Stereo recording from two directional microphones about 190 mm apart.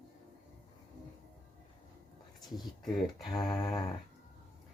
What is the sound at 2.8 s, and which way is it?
Speech, centre (ahead or behind).